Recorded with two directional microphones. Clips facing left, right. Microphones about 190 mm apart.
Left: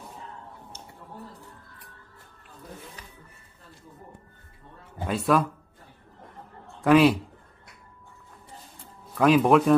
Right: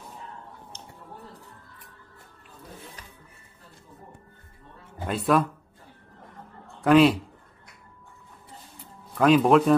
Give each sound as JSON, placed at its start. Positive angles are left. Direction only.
{"t": 5.0, "sound": "speech", "side_deg": 0}
{"t": 6.8, "sound": "a man's voice", "side_deg": 0}
{"t": 9.2, "sound": "speech", "side_deg": 0}